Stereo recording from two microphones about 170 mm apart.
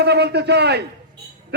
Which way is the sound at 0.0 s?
75° right (ahead or behind).